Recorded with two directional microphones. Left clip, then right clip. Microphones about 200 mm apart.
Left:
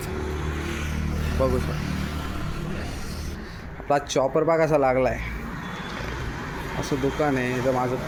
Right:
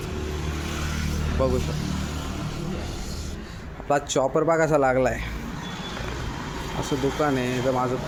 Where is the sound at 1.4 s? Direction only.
10° right (ahead or behind).